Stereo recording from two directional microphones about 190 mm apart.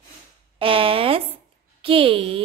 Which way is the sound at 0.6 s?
30° right (ahead or behind).